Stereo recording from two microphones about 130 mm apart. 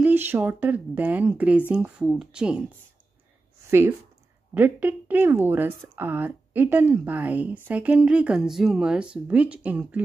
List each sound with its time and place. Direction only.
0.0 s speech: 15° right (ahead or behind)
4.6 s speech: 15° right (ahead or behind)